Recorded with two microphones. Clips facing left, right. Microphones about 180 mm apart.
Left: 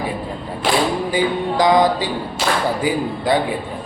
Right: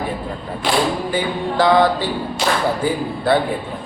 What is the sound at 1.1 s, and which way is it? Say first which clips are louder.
Speech: left 2 dB; 15° left (ahead or behind).